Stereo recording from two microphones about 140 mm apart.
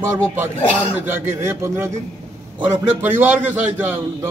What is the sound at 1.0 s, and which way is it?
A man's voice, 15° right (ahead or behind).